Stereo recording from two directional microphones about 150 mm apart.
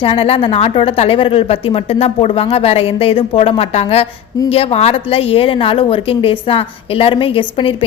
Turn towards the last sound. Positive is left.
turn(degrees=35)  # may be behind; listen again after turning